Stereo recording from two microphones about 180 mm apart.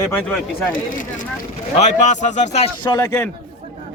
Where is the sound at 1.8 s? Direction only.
40° left (ahead or behind).